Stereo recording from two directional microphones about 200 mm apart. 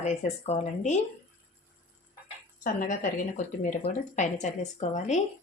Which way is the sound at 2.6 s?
40° left (ahead or behind).